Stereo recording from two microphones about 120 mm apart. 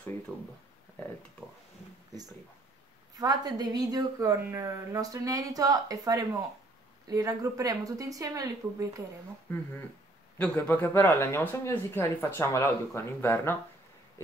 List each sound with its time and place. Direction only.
3.2 s a woman's voice: 35° right (ahead or behind)
9.5 s a man's voice: 15° left (ahead or behind)
10.7 s speech: 20° left (ahead or behind)